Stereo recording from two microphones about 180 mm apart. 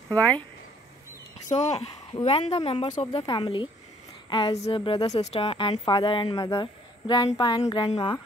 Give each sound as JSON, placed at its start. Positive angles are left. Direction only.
{"t": 0.1, "sound": "speech", "side_deg": 10}
{"t": 1.5, "sound": "speech", "side_deg": 40}
{"t": 5.1, "sound": "speech", "side_deg": 35}